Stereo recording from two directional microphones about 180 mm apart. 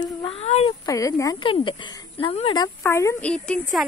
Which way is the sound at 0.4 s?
35° left (ahead or behind).